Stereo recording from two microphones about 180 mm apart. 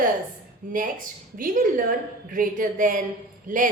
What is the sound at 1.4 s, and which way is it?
A woman's voice, 50° right (ahead or behind).